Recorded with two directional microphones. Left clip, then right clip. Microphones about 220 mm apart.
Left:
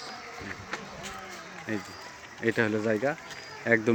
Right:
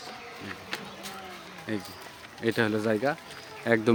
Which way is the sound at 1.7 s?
10° right (ahead or behind).